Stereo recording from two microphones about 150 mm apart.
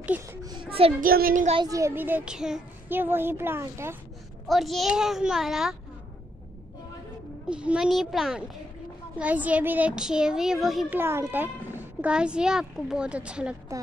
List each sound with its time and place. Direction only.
0.0 s a child's voice: 10° right (ahead or behind)
0.4 s a sound: 25° right (ahead or behind)
1.0 s speech: 75° right (ahead or behind)
1.6 s speech: 20° right (ahead or behind)
4.5 s a child's voice: centre (ahead or behind)
7.4 s a child's voice: 5° right (ahead or behind)
11.0 s speech: 15° right (ahead or behind)